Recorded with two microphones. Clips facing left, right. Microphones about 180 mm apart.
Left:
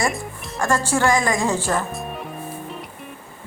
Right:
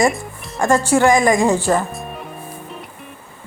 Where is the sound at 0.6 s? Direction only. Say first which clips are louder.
Right 6 dB; 20° right (ahead or behind).